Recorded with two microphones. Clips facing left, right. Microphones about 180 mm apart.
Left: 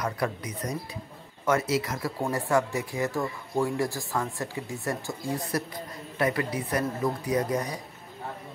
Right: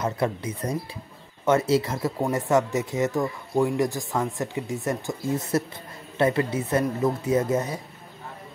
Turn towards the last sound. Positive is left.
turn(degrees=-25)  # may be behind; listen again after turning